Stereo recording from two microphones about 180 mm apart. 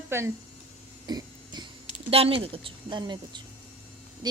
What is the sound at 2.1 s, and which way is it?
A woman's voice, 30° right (ahead or behind).